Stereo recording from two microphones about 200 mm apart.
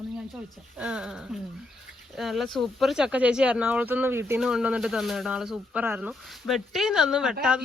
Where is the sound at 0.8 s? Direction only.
5° right (ahead or behind).